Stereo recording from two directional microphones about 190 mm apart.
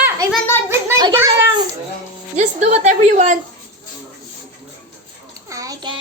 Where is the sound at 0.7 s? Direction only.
15° right (ahead or behind).